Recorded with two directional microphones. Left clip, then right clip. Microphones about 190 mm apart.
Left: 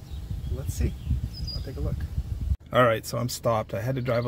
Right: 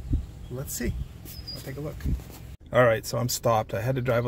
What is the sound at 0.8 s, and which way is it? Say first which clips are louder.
Speech: right 3 dB; 35° right (ahead or behind).